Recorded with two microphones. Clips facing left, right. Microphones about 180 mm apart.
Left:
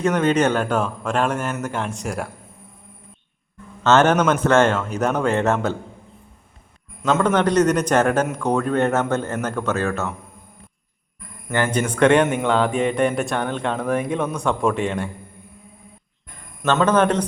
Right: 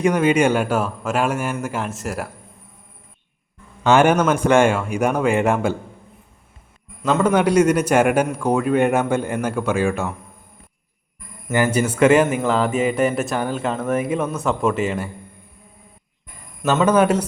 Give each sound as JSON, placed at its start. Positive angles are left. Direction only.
{"t": 0.0, "sound": "a man's voice", "side_deg": -10}
{"t": 3.8, "sound": "a man's voice", "side_deg": -10}
{"t": 7.0, "sound": "a man's voice", "side_deg": -5}
{"t": 11.4, "sound": "speech", "side_deg": -10}
{"t": 16.6, "sound": "a man's voice", "side_deg": -10}